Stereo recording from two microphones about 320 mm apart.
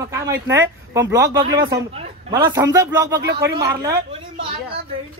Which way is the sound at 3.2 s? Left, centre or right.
Right.